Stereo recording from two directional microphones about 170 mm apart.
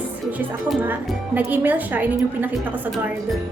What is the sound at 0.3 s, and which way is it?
A woman's voice, 10° right (ahead or behind).